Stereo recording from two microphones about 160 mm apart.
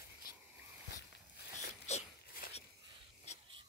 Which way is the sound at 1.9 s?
45° left (ahead or behind).